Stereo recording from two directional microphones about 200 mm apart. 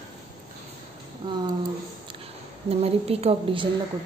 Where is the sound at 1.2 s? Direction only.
25° right (ahead or behind).